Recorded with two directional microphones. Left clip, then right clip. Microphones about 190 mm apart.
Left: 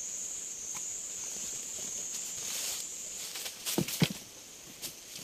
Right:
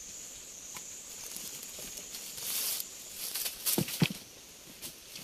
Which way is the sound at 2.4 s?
60° right (ahead or behind).